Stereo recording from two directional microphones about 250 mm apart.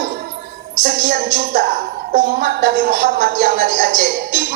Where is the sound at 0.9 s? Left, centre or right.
Right.